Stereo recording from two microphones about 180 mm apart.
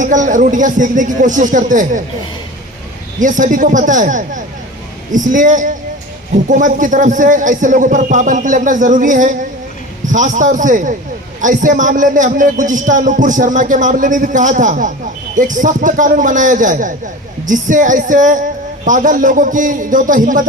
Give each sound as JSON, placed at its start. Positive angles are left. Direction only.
{"t": 0.0, "sound": "a man's voice", "side_deg": -45}
{"t": 3.2, "sound": "a man's voice", "side_deg": -45}